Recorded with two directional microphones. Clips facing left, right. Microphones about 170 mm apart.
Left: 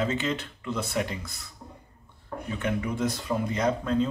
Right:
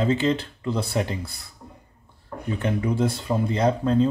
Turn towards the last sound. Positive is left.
turn(degrees=-30)  # may be behind; listen again after turning